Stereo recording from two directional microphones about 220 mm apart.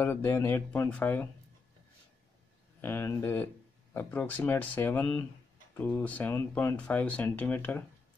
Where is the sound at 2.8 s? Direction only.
10° left (ahead or behind).